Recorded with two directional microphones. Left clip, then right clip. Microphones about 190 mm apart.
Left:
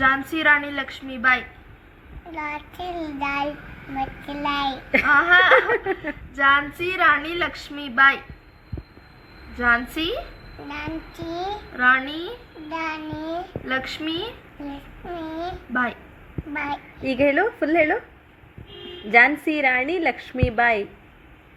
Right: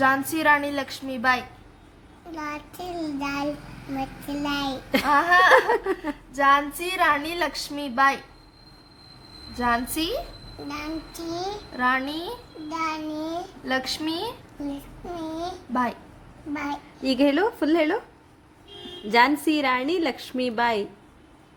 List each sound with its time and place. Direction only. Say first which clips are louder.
0.3 s speech: left 2 dB; 40° right (ahead or behind)
2.3 s a child's voice: left 3 dB; 25° right (ahead or behind)
4.9 s speech: left 3 dB; 40° right (ahead or behind)
9.6 s speech: left 4 dB; 40° right (ahead or behind)
11.3 s speech: left 2 dB; 25° right (ahead or behind)
12.7 s a child's voice: even; 25° right (ahead or behind)
17.0 s a woman's voice: left 2 dB; 50° right (ahead or behind)
17.4 s a child's voice: left 2 dB; 25° right (ahead or behind)
19.2 s a woman's voice: left 3 dB; 45° right (ahead or behind)